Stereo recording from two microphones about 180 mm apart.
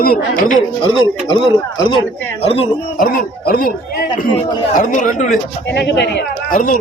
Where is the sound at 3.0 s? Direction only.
55° left (ahead or behind).